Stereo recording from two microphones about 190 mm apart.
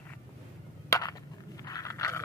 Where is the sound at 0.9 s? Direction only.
20° left (ahead or behind).